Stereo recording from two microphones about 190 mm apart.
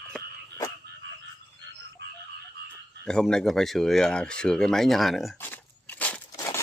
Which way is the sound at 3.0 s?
5° left (ahead or behind).